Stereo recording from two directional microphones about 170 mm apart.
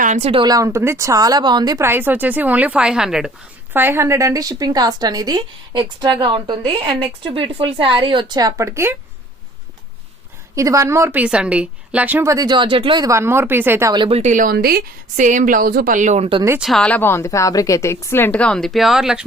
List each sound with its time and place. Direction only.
0.0 s a sound: 45° right (ahead or behind)
0.3 s speech: 25° right (ahead or behind)
10.5 s a woman's voice: 20° right (ahead or behind)
13.9 s speech: 30° right (ahead or behind)
14.2 s a woman's voice: 45° right (ahead or behind)
16.6 s a woman's voice: centre (ahead or behind)